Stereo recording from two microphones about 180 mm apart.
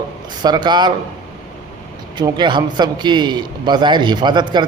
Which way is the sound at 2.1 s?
25° right (ahead or behind).